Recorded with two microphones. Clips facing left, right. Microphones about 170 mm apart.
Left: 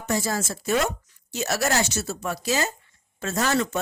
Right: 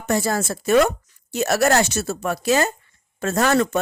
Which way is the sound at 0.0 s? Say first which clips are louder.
Right 5 dB; 60° right (ahead or behind).